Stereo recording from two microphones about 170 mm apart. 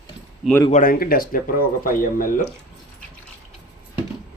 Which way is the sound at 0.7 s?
55° left (ahead or behind).